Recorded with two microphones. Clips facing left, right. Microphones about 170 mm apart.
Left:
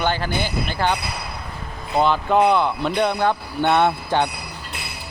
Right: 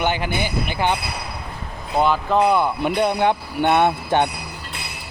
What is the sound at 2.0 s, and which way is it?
Speech, 5° right (ahead or behind).